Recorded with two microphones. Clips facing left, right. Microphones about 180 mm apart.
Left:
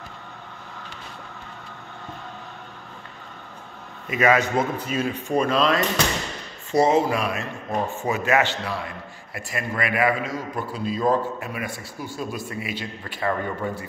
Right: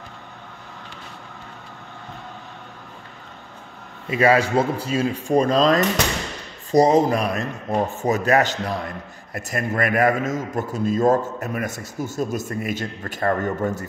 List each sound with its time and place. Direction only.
4.1 s a man's voice: 30° right (ahead or behind)